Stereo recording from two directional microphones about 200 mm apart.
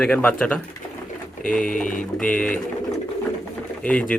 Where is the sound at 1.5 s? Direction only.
40° left (ahead or behind).